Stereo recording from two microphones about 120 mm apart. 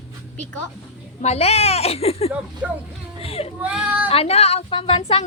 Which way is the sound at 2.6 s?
10° right (ahead or behind).